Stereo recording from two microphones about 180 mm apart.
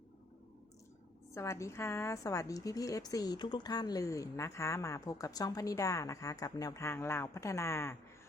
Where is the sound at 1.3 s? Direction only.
15° left (ahead or behind).